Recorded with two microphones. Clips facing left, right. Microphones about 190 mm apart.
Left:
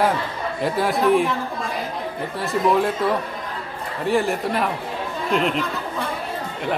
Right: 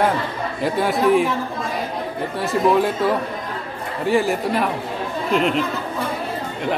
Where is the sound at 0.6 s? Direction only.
Centre (ahead or behind).